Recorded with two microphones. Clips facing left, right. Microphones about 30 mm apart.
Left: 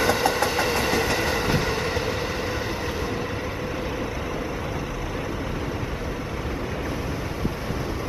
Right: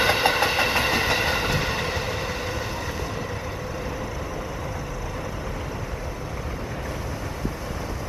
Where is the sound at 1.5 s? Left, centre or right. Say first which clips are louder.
Left 1 dB; centre.